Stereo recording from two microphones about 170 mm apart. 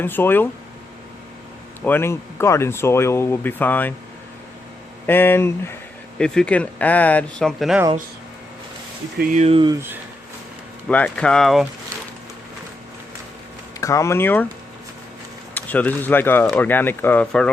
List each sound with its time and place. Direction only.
0.0 s speech: 10° left (ahead or behind)
1.8 s speech: 10° left (ahead or behind)
5.0 s speech: 10° left (ahead or behind)
9.3 s speech: 35° right (ahead or behind)
10.8 s speech: 5° left (ahead or behind)
13.8 s speech: 15° left (ahead or behind)
15.5 s speech: 10° left (ahead or behind)